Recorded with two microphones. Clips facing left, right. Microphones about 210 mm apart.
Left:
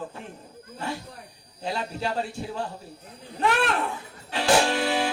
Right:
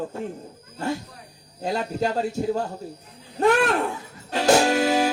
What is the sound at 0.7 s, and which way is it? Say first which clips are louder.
Speech: right 5 dB; 45° right (ahead or behind).